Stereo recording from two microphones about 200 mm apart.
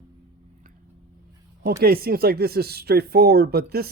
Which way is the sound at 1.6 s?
50° right (ahead or behind).